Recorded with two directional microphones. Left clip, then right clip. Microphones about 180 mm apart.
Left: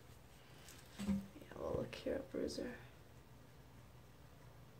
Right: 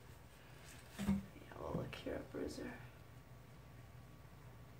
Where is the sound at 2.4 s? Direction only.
30° left (ahead or behind).